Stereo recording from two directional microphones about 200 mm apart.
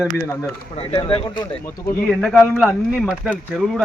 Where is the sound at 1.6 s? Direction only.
15° left (ahead or behind).